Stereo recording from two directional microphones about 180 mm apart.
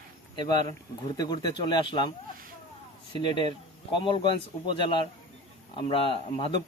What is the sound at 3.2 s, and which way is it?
Speech, 25° left (ahead or behind).